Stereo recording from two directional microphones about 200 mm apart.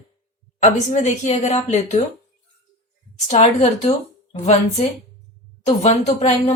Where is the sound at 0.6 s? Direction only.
35° left (ahead or behind).